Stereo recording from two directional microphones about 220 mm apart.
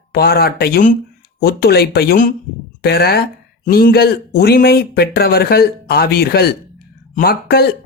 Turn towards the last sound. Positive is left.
turn(degrees=45)  # may be behind; listen again after turning